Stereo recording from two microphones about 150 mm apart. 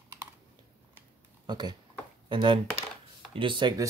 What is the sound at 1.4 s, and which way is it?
Speech, 30° right (ahead or behind).